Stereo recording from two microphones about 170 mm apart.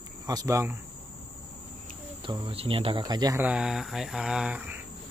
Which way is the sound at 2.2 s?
30° right (ahead or behind).